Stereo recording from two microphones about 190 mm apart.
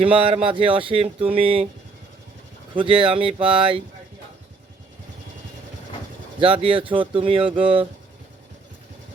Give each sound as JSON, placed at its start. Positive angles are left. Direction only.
{"t": 0.0, "sound": "speech", "side_deg": -30}
{"t": 2.7, "sound": "speech", "side_deg": -25}
{"t": 6.4, "sound": "speech", "side_deg": -30}